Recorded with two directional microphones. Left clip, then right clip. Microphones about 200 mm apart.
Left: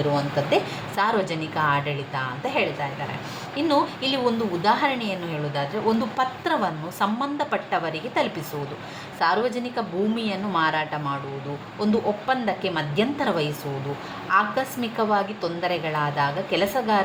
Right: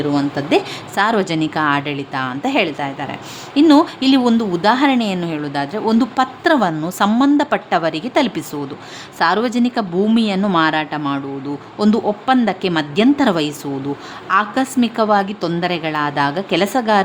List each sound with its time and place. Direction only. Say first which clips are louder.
0.1 s a woman's voice: right 6 dB; 55° right (ahead or behind)